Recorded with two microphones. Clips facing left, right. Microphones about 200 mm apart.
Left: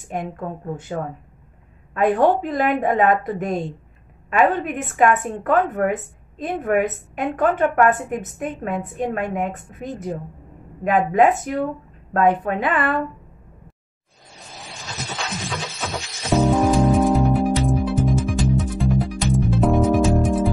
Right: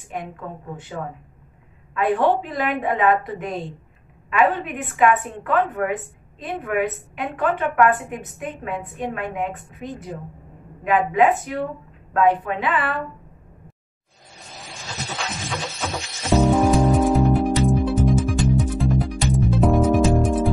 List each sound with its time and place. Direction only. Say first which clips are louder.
0.1 s a woman's voice: left 4 dB; 45° left (ahead or behind)
2.0 s a woman's voice: left 2 dB; 45° left (ahead or behind)
16.3 s music: even; centre (ahead or behind)